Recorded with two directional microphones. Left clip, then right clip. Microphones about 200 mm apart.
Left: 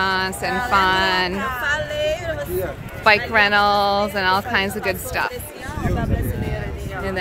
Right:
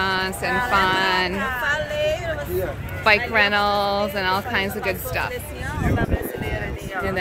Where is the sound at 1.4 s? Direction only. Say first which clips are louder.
Left 1 dB; 55° left (ahead or behind).